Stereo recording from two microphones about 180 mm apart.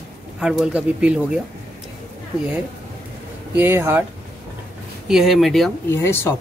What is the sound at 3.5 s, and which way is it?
Speech, 15° right (ahead or behind).